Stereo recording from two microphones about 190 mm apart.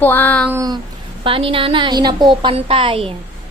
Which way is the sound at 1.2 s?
30° right (ahead or behind).